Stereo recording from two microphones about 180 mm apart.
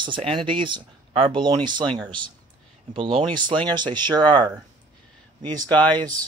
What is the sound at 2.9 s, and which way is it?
Speech, 30° right (ahead or behind).